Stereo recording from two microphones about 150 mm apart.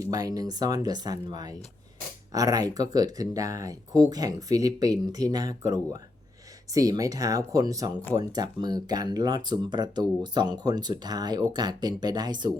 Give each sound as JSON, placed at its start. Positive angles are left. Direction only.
{"t": 0.0, "sound": "speech", "side_deg": -25}